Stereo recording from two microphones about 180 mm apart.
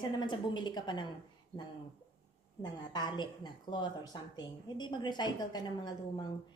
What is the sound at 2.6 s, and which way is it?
A woman's voice, 25° left (ahead or behind).